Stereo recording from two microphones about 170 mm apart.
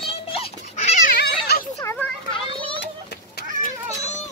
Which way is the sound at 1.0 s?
65° left (ahead or behind).